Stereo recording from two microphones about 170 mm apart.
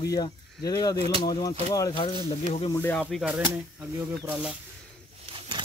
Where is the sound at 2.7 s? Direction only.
15° left (ahead or behind).